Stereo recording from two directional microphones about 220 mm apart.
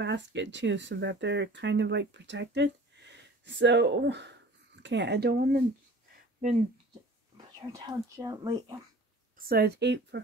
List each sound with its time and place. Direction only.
0.0 s speech: 55° right (ahead or behind)
6.4 s speech: 30° right (ahead or behind)
7.7 s speech: 15° right (ahead or behind)
9.5 s speech: 50° right (ahead or behind)